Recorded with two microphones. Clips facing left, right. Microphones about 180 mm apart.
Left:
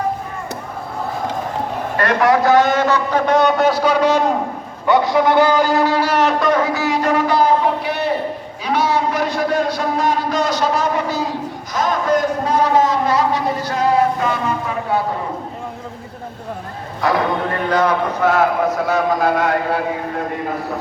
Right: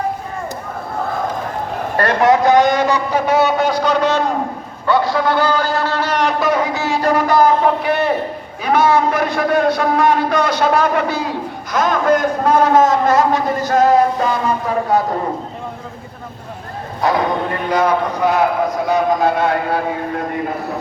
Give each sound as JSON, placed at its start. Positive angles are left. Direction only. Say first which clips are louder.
{"t": 2.0, "sound": "a man's voice", "louder": "right 2 dB", "side_deg": -25}
{"t": 6.7, "sound": "a man's voice", "louder": "right 1 dB", "side_deg": -30}
{"t": 17.7, "sound": "a man's voice", "louder": "right 1 dB", "side_deg": -10}